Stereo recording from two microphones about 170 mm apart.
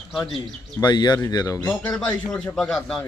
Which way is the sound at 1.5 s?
10° left (ahead or behind).